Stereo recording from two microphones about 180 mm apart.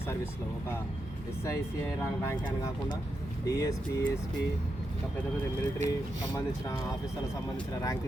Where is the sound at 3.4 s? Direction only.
20° left (ahead or behind).